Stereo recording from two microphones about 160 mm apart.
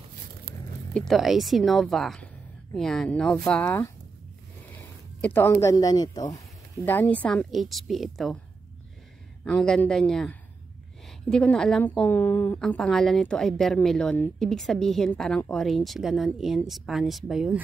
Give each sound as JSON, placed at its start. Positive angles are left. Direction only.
{"t": 0.5, "sound": "a sound", "side_deg": -80}
{"t": 0.9, "sound": "a woman's voice", "side_deg": 0}
{"t": 5.2, "sound": "a woman's voice", "side_deg": 10}
{"t": 9.4, "sound": "a woman's voice", "side_deg": 5}